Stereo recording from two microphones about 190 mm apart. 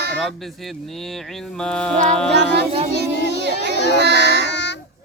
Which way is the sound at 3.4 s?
60° right (ahead or behind).